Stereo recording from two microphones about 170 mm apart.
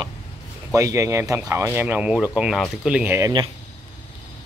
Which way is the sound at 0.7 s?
20° right (ahead or behind).